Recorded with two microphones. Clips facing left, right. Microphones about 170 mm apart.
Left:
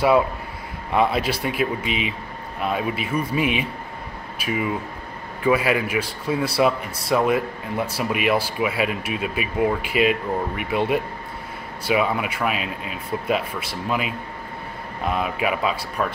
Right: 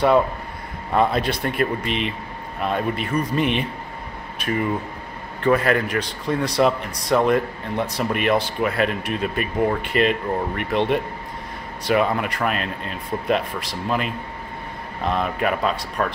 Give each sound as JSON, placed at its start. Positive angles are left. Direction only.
{"t": 0.9, "sound": "a man's voice", "side_deg": 5}